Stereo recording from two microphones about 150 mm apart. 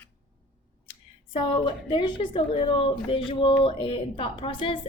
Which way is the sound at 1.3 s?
35° left (ahead or behind).